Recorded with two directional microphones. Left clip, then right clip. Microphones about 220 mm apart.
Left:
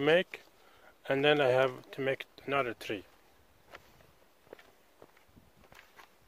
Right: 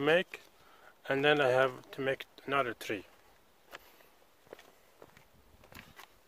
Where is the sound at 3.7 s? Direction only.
20° right (ahead or behind).